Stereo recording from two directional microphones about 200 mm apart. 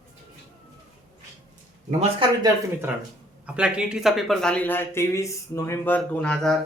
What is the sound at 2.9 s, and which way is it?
A man's voice, 5° right (ahead or behind).